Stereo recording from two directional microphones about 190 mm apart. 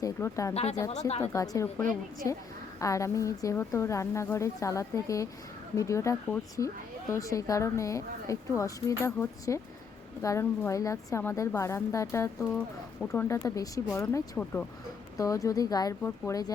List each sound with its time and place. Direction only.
0.0 s a woman's voice: 15° left (ahead or behind)
0.5 s speech: 35° left (ahead or behind)
1.2 s a woman's voice: 15° left (ahead or behind)